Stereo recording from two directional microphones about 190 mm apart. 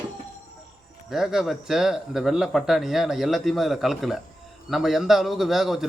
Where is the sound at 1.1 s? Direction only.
Centre (ahead or behind).